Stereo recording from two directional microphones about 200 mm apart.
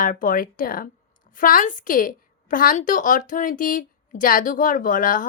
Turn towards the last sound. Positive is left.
turn(degrees=40)  # may be behind; listen again after turning